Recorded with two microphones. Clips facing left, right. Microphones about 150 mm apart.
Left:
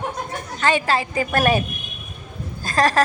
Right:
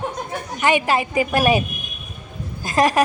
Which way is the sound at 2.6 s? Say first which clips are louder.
Right 1 dB; 20° right (ahead or behind).